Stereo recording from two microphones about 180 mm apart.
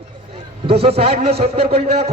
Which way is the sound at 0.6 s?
35° right (ahead or behind).